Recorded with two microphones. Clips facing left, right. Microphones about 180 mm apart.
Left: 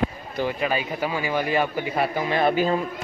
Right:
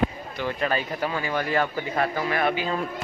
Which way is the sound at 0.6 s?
10° left (ahead or behind).